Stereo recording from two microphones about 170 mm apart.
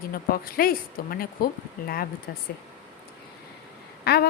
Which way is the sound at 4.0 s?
70° left (ahead or behind).